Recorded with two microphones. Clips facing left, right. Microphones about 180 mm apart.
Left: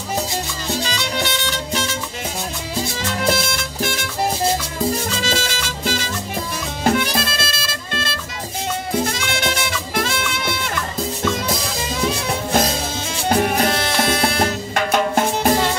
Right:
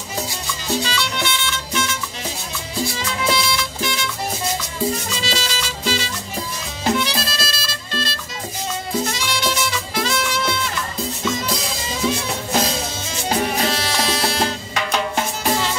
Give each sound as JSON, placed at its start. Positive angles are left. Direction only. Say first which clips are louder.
{"t": 0.8, "sound": "music", "louder": "left 1 dB", "side_deg": 45}
{"t": 3.0, "sound": "music", "louder": "left 3 dB", "side_deg": 50}
{"t": 5.1, "sound": "music", "louder": "left 2 dB", "side_deg": 50}
{"t": 13.3, "sound": "music", "louder": "left 3 dB", "side_deg": 55}